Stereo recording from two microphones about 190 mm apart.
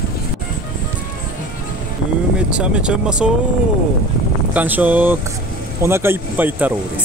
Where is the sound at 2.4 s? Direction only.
5° right (ahead or behind).